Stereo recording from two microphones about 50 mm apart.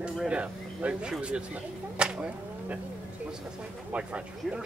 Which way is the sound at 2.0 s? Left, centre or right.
Right.